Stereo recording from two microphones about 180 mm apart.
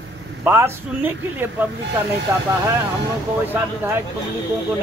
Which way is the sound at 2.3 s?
15° right (ahead or behind).